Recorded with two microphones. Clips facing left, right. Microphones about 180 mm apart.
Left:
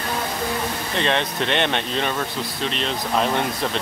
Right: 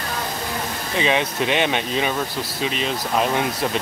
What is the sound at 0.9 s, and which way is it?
Speech, 5° right (ahead or behind).